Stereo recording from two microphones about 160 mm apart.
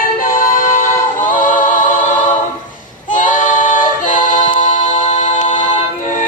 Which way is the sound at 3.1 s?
55° left (ahead or behind).